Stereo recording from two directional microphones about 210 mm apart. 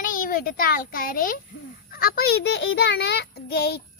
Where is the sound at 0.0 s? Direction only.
40° left (ahead or behind).